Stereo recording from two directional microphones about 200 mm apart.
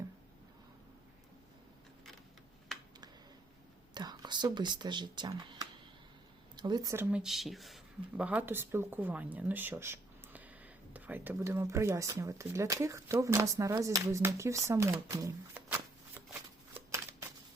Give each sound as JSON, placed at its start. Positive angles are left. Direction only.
{"t": 2.7, "sound": "a sound", "side_deg": 0}
{"t": 3.9, "sound": "speech", "side_deg": -20}
{"t": 15.7, "sound": "shuffling cards", "side_deg": -10}